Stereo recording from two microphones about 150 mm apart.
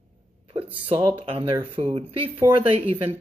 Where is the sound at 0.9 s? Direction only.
35° right (ahead or behind).